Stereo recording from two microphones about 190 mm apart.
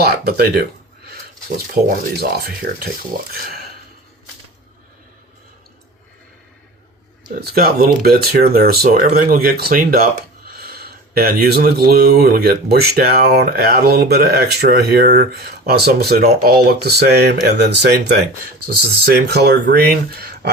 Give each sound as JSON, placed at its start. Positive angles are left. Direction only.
{"t": 0.0, "sound": "speech", "side_deg": -55}
{"t": 7.4, "sound": "speech", "side_deg": -50}